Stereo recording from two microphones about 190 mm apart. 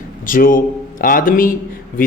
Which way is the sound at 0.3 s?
45° left (ahead or behind).